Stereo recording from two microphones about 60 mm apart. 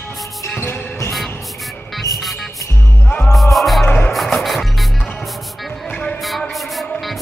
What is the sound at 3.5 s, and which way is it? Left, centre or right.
Music, centre.